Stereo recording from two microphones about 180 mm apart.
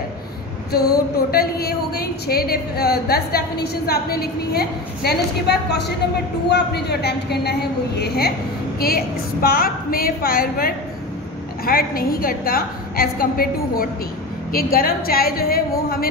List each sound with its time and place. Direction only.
0.7 s a woman's voice: 60° left (ahead or behind)
8.7 s a woman's voice: 55° left (ahead or behind)